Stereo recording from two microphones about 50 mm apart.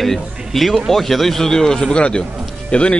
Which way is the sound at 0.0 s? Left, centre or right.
Centre.